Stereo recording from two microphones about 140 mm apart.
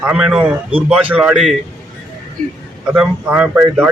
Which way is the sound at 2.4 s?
65° right (ahead or behind).